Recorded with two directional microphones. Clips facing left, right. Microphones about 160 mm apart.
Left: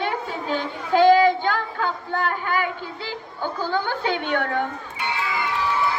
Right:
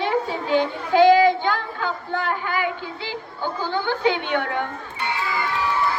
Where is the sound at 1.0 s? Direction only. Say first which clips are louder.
Right 1 dB; 45° left (ahead or behind).